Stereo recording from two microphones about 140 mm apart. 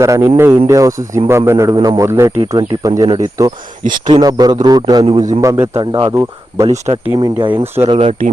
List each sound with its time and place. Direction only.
0.0 s a man's voice: 20° right (ahead or behind)
5.4 s a man's voice: 20° right (ahead or behind)
6.7 s speech: 50° right (ahead or behind)
7.2 s speech: 35° right (ahead or behind)
7.5 s speech: 15° right (ahead or behind)
7.9 s speech: 40° right (ahead or behind)